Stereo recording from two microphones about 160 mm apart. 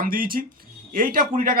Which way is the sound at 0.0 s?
65° right (ahead or behind).